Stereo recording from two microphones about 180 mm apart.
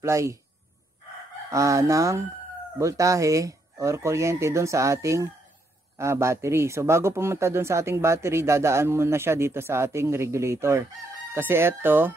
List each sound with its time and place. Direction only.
0.0 s speech: 15° right (ahead or behind)
1.5 s speech: 15° right (ahead or behind)